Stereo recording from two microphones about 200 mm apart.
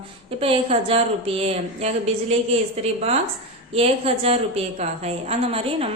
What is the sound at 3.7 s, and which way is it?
A woman's voice, 30° right (ahead or behind).